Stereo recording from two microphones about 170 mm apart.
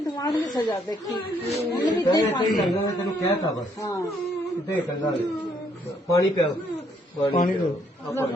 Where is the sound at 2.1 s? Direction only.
25° left (ahead or behind).